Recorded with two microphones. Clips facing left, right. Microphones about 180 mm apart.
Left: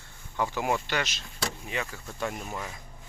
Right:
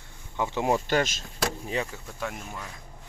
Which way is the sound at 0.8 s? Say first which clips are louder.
Right 6 dB; 45° right (ahead or behind).